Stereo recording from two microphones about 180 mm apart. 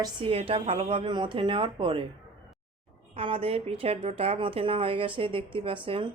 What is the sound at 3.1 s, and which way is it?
A woman's voice, 30° right (ahead or behind).